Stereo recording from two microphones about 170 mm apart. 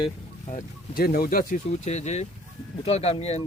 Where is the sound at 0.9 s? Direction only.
60° left (ahead or behind).